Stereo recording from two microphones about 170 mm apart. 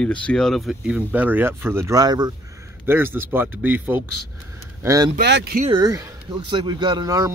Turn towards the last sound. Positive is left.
turn(degrees=-20)  # may be behind; listen again after turning